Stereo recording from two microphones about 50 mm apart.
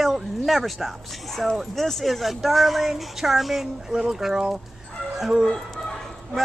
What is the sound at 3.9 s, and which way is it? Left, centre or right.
Speech, centre.